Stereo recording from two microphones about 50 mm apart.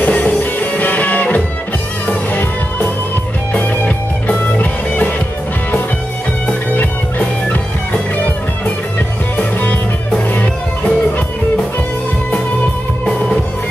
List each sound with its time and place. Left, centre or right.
0.0 s music: left
6.7 s music: left
9.4 s music: left